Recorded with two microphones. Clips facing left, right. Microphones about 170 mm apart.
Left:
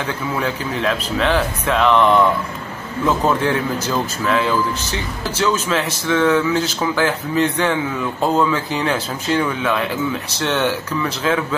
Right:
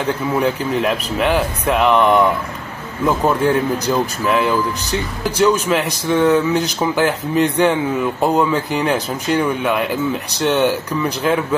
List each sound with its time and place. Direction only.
0.4 s speech: 15° right (ahead or behind)